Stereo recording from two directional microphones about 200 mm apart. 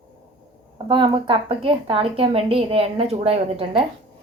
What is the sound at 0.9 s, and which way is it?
A woman's voice, 25° right (ahead or behind).